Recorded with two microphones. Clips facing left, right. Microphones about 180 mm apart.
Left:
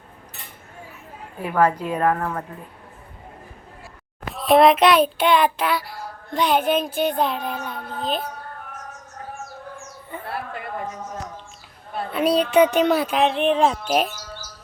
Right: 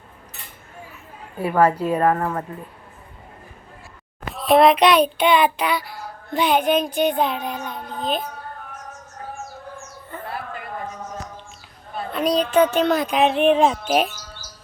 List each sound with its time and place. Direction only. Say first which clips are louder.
1.5 s speech: right 2 dB; 10° right (ahead or behind)
4.3 s child singing: even; centre (ahead or behind)
12.1 s a sound: left 1 dB; 5° left (ahead or behind)
13.2 s child singing: right 4 dB; 10° right (ahead or behind)